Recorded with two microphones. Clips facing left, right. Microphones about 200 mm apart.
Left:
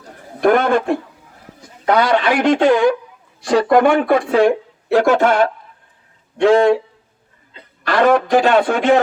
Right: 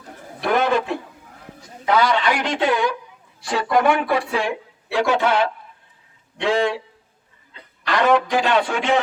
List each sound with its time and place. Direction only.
0.4 s speech: 50° left (ahead or behind)
7.9 s speech: 45° left (ahead or behind)